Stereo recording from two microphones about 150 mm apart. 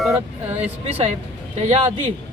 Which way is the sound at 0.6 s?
40° right (ahead or behind).